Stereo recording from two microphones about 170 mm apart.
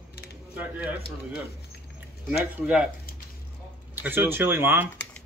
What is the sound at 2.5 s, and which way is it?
Speech, 5° right (ahead or behind).